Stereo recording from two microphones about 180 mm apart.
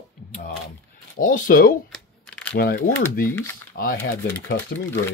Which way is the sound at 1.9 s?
5° left (ahead or behind).